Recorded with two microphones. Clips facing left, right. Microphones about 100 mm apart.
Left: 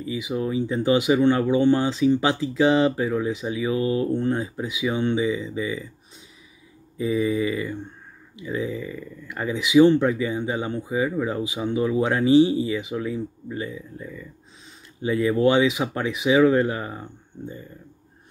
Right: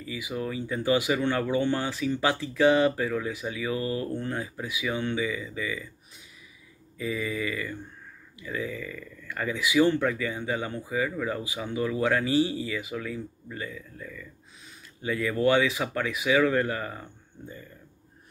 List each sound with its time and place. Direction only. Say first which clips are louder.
0.0 s speech: left 6 dB; 20° left (ahead or behind)
7.0 s speech: left 8 dB; 25° left (ahead or behind)